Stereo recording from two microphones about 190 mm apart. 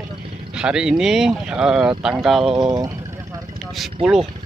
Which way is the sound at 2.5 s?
25° right (ahead or behind).